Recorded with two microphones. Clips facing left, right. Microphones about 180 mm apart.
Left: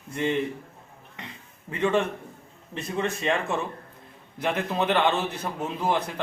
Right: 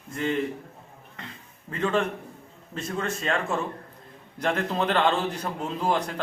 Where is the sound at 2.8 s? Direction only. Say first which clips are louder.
Left 2 dB; 10° left (ahead or behind).